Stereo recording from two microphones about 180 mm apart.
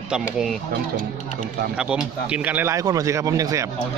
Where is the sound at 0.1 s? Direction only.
5° right (ahead or behind).